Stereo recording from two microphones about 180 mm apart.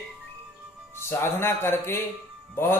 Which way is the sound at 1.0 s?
15° left (ahead or behind).